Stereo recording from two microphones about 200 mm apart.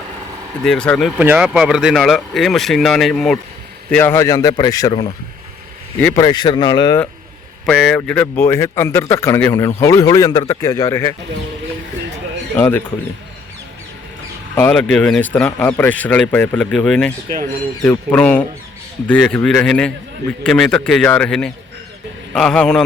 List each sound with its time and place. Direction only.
0.6 s a man's voice: 5° left (ahead or behind); by 5.0 s 20° left (ahead or behind)
6.0 s a man's voice: 10° left (ahead or behind)
6.2 s speech: 20° left (ahead or behind)
7.6 s a man's voice: centre (ahead or behind); by 11.1 s 15° left (ahead or behind)
12.5 s speech: 10° left (ahead or behind)
14.5 s a man's voice: 5° left (ahead or behind)